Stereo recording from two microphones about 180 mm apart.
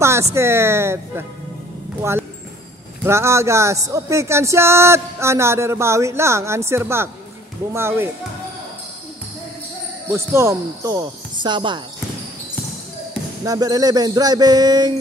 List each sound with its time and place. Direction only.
0.0 s speech: 15° right (ahead or behind)
10.1 s speech: 15° right (ahead or behind)
13.4 s speech: 20° right (ahead or behind)